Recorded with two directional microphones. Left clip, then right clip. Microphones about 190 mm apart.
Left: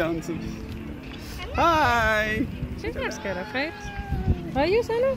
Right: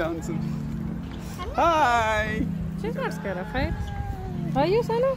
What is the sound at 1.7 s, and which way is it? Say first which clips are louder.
Speech: even; 45° left (ahead or behind).